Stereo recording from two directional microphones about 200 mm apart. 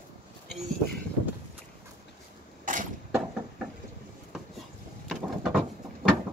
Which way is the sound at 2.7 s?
40° right (ahead or behind).